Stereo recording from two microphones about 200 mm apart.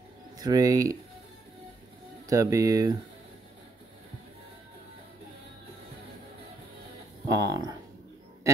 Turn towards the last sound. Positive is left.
turn(degrees=-20)  # may be behind; listen again after turning